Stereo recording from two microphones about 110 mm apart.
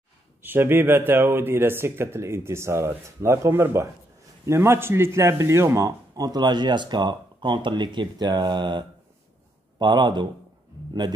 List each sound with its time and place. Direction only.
0.4 s a man's voice: 20° right (ahead or behind); by 11.1 s 40° right (ahead or behind)